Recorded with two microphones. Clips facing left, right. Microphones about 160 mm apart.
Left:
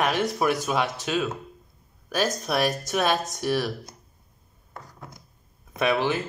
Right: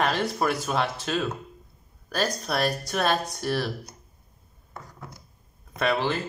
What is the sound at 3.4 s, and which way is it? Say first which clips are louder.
Speech: left 2 dB; 5° left (ahead or behind).